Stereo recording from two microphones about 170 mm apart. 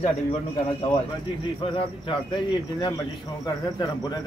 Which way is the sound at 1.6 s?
30° left (ahead or behind).